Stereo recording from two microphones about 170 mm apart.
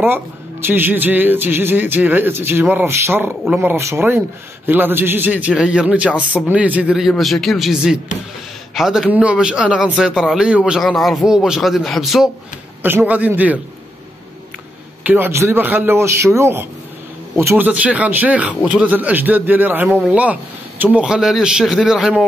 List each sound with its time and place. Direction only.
0.0 s a man's voice: 15° right (ahead or behind)
15.0 s a man's voice: 10° right (ahead or behind)